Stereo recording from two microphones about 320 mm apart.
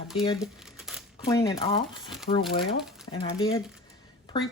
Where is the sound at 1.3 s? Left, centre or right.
Centre.